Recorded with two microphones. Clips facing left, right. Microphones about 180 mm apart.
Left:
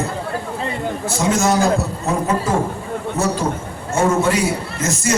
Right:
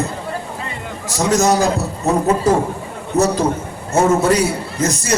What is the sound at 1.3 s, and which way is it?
Speech, 40° right (ahead or behind).